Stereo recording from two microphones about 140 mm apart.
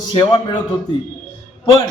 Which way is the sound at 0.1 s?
35° left (ahead or behind).